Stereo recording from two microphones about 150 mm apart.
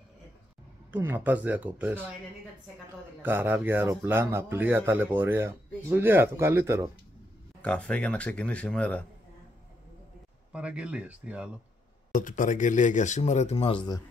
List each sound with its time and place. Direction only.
0.9 s speech: 15° right (ahead or behind)
3.2 s speech: 15° right (ahead or behind)
7.6 s speech: 10° left (ahead or behind)
10.5 s speech: 5° right (ahead or behind)
12.1 s speech: 60° left (ahead or behind); by 13.8 s 40° left (ahead or behind)